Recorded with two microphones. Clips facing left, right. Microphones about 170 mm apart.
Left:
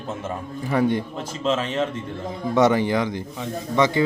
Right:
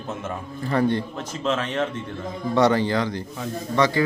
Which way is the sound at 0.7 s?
15° left (ahead or behind).